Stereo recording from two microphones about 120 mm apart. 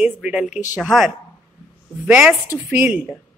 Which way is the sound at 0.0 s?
5° right (ahead or behind).